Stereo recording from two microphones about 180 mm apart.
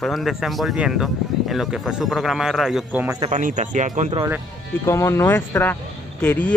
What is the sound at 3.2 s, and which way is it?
Speech, 40° right (ahead or behind).